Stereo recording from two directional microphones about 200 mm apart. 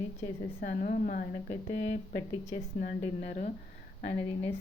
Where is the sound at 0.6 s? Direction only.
40° left (ahead or behind).